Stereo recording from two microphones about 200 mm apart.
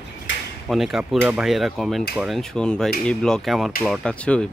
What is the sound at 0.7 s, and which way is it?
Speech, centre (ahead or behind).